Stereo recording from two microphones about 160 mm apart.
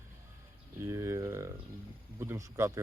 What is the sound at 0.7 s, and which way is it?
Speech, 15° right (ahead or behind).